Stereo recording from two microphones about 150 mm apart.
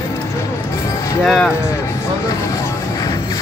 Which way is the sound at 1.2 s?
5° left (ahead or behind).